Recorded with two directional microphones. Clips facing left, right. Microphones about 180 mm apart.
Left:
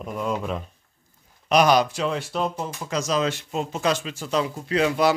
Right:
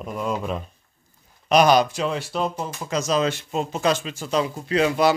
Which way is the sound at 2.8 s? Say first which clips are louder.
Right 2 dB; 30° right (ahead or behind).